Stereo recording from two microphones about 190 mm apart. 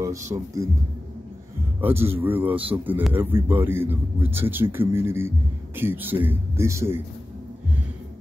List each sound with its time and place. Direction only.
0.0 s a man's voice: 15° right (ahead or behind)
1.8 s a man's voice: 10° right (ahead or behind)